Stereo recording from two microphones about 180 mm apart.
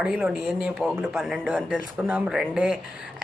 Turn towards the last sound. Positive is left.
turn(degrees=-5)  # may be behind; listen again after turning